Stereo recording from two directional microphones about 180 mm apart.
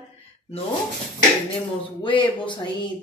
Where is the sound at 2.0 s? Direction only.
25° left (ahead or behind).